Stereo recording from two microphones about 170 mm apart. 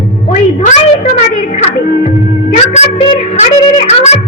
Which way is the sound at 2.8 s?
45° left (ahead or behind).